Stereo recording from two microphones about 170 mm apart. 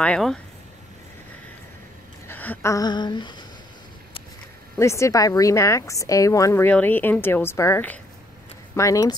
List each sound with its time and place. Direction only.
0.0 s speech: 5° left (ahead or behind)
2.2 s a sound: 10° left (ahead or behind); by 3.4 s 25° left (ahead or behind)
4.7 s a woman's voice: 15° left (ahead or behind)